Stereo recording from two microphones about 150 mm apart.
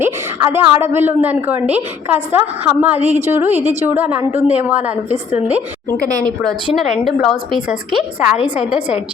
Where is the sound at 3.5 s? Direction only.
45° right (ahead or behind).